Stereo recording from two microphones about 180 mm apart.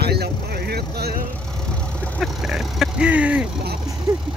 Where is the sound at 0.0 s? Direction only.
60° right (ahead or behind).